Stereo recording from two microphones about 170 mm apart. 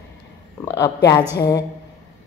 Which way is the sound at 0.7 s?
20° left (ahead or behind).